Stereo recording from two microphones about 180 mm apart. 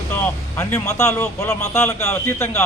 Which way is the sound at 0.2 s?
15° left (ahead or behind).